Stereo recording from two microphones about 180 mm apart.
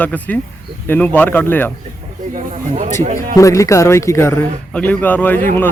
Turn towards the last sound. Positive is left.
turn(degrees=10)  # may be behind; listen again after turning